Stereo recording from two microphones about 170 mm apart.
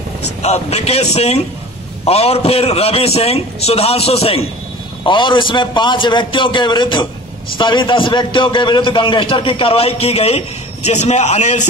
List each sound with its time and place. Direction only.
0.4 s a man's voice: 40° left (ahead or behind)